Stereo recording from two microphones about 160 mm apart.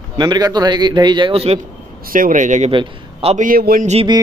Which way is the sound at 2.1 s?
55° right (ahead or behind).